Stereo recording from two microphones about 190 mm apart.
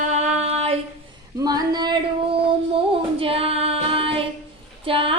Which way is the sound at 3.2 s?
30° right (ahead or behind).